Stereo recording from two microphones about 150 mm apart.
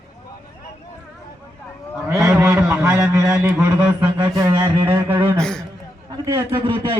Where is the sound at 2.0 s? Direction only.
20° right (ahead or behind).